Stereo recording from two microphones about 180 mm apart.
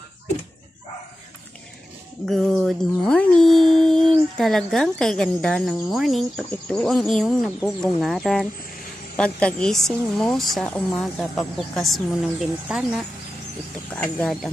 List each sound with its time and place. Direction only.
2.2 s a woman's voice: centre (ahead or behind)